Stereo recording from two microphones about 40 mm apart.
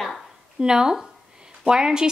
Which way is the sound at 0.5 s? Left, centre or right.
Centre.